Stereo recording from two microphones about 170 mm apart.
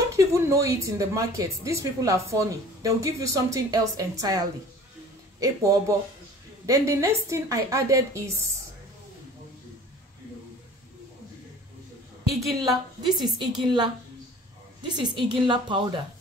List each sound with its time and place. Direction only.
0.1 s a woman's voice: 15° right (ahead or behind)
12.4 s a woman's voice: 20° right (ahead or behind)